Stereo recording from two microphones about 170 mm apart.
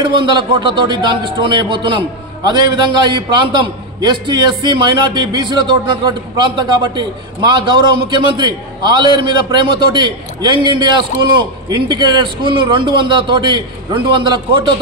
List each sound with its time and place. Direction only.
0.0 s a man's voice: 30° right (ahead or behind)